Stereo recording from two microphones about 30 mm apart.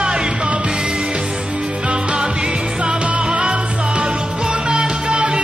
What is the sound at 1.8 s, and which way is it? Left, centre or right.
Music, right.